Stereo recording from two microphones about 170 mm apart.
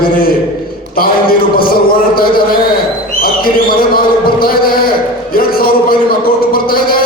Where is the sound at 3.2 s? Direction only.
60° left (ahead or behind).